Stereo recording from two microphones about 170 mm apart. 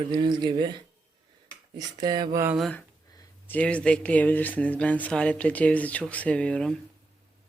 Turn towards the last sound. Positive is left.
turn(degrees=5)  # may be behind; listen again after turning